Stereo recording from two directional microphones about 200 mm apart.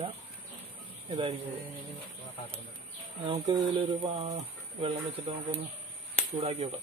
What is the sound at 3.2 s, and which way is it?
Speech, 25° right (ahead or behind).